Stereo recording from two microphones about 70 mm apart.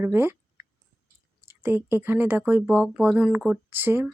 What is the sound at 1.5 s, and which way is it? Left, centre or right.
Speech, right.